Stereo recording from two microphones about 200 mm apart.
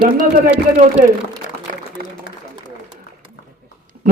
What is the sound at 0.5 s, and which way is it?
Speech, 5° right (ahead or behind).